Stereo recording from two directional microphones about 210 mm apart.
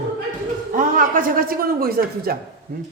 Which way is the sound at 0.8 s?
40° right (ahead or behind).